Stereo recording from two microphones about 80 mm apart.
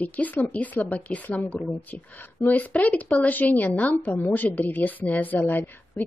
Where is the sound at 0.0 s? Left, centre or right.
Centre.